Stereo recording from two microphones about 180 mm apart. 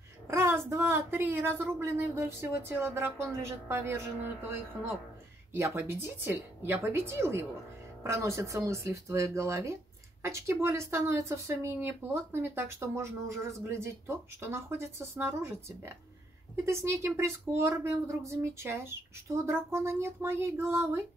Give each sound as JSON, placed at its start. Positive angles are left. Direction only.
{"t": 0.3, "sound": "a woman's voice", "side_deg": -15}